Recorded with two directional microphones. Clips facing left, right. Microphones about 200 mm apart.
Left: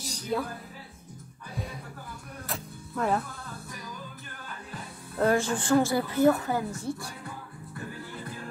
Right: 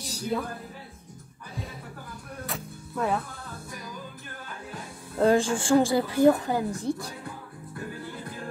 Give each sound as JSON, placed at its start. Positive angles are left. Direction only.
{"t": 0.0, "sound": "music", "side_deg": 0}
{"t": 2.4, "sound": "music", "side_deg": 0}
{"t": 5.2, "sound": "a woman's voice", "side_deg": -15}